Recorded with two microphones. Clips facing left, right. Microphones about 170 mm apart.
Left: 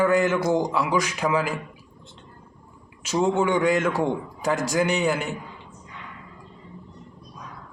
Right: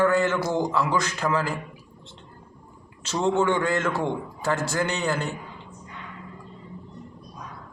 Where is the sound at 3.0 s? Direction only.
10° left (ahead or behind).